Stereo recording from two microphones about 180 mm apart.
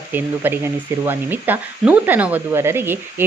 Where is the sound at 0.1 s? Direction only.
10° right (ahead or behind).